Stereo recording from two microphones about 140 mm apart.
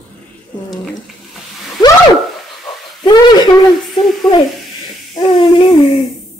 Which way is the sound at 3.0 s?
30° left (ahead or behind).